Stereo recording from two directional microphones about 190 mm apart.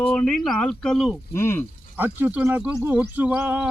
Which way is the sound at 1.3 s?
15° left (ahead or behind).